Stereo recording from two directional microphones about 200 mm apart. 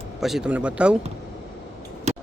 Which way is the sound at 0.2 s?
Centre (ahead or behind).